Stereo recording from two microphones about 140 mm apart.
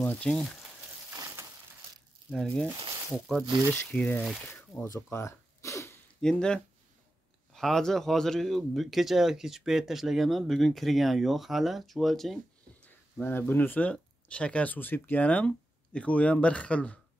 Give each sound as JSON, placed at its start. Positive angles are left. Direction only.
{"t": 0.0, "sound": "speech", "side_deg": 10}
{"t": 2.3, "sound": "speech", "side_deg": 5}
{"t": 4.8, "sound": "a sound", "side_deg": 20}
{"t": 6.2, "sound": "speech", "side_deg": 5}
{"t": 12.8, "sound": "speech", "side_deg": 15}